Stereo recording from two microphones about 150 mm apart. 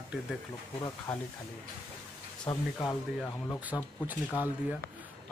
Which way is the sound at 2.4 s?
25° left (ahead or behind).